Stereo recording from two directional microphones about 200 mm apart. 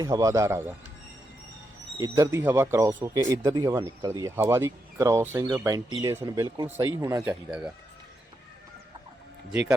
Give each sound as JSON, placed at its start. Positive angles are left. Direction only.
{"t": 0.0, "sound": "speech", "side_deg": -15}
{"t": 2.0, "sound": "speech", "side_deg": -15}
{"t": 9.5, "sound": "speech", "side_deg": -5}